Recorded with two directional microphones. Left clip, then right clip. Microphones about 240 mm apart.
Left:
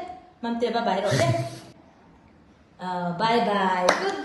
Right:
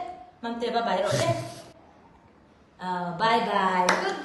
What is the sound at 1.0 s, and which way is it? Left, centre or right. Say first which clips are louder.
Speech: left 2 dB; left.